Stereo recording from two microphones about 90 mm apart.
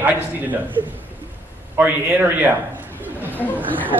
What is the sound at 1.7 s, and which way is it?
Speech, 20° right (ahead or behind).